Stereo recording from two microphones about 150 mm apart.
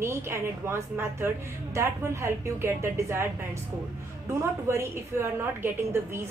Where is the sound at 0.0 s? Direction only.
15° right (ahead or behind).